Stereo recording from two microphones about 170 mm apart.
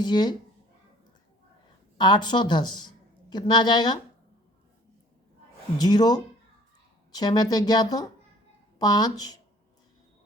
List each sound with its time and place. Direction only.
0.0 s a woman's voice: 25° left (ahead or behind)
2.0 s a woman's voice: 25° left (ahead or behind)
5.7 s a woman's voice: 25° left (ahead or behind)